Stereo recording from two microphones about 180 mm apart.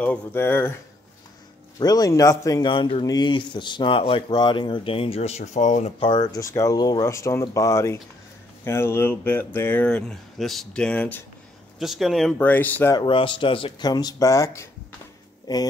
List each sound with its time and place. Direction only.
0.0 s speech: 10° left (ahead or behind)
1.8 s a man's voice: 20° left (ahead or behind); by 5.9 s 40° left (ahead or behind)
5.9 s speech: 25° left (ahead or behind); by 11.2 s 10° left (ahead or behind)
11.8 s speech: centre (ahead or behind)
12.9 s a man's voice: 25° left (ahead or behind)